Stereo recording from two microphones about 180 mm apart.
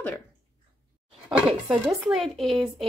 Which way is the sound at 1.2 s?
5° right (ahead or behind).